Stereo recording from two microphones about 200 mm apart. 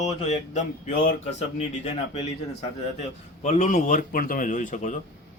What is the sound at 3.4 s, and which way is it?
Speech, 35° left (ahead or behind).